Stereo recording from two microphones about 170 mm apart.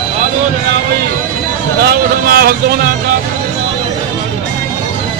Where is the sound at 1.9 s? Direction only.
65° right (ahead or behind).